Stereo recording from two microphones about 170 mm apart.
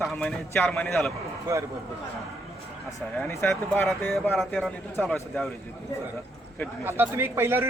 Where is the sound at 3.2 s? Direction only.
10° left (ahead or behind).